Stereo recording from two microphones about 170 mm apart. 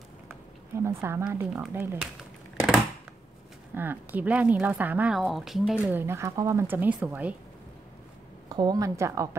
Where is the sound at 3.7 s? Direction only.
10° right (ahead or behind).